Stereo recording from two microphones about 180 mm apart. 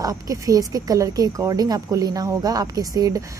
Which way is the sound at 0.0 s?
20° right (ahead or behind).